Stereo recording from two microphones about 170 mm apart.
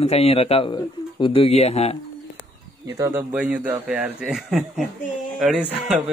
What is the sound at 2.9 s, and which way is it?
Speech, 15° right (ahead or behind).